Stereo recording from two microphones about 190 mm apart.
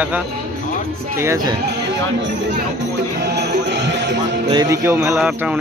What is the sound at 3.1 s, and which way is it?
Music, 60° right (ahead or behind).